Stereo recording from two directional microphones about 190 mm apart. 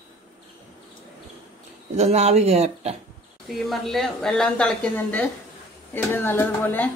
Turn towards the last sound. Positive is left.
turn(degrees=10)  # may be behind; listen again after turning